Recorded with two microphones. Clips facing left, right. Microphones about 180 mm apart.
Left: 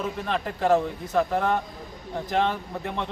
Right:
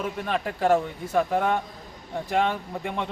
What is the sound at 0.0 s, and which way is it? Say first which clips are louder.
A man's voice: even; 5° right (ahead or behind).